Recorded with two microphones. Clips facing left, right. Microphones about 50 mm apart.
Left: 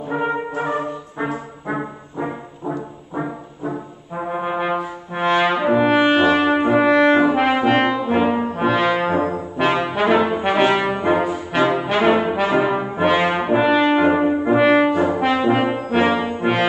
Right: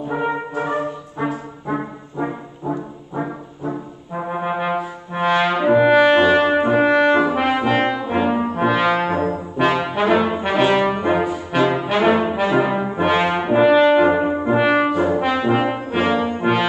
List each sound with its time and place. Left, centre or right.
0.1 s brass instrument: centre
3.2 s brass instrument: centre
9.0 s brass instrument: centre